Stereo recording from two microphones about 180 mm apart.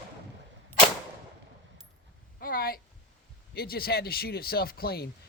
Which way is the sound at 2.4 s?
55° left (ahead or behind).